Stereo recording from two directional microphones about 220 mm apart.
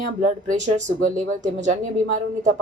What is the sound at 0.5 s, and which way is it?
A woman's voice, 35° right (ahead or behind).